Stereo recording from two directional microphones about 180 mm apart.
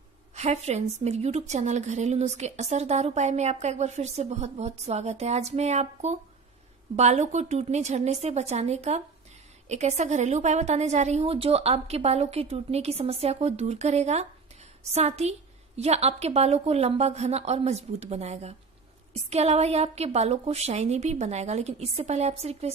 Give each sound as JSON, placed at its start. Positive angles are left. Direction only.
{"t": 0.3, "sound": "a woman's voice", "side_deg": -40}